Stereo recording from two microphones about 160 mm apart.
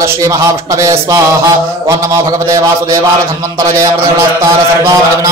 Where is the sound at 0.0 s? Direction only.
20° right (ahead or behind).